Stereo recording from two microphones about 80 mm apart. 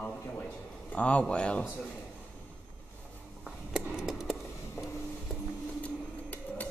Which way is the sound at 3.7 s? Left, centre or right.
Centre.